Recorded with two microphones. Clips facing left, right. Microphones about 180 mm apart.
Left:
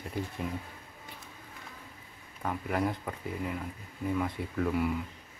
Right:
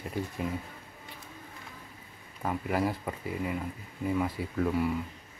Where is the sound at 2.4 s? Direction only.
5° right (ahead or behind).